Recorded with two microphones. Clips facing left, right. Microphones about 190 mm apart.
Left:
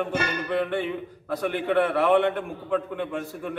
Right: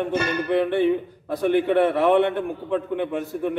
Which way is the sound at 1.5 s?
25° right (ahead or behind).